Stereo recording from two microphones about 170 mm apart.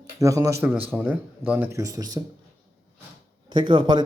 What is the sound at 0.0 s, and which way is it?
A man's voice, 20° right (ahead or behind).